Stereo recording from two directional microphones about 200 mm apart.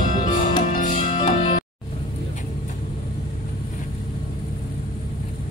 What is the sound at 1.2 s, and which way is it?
Music, 25° left (ahead or behind).